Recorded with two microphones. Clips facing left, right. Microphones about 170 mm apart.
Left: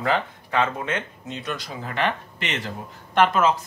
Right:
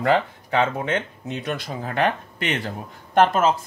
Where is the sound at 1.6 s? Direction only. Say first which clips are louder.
Right 4 dB; 45° right (ahead or behind).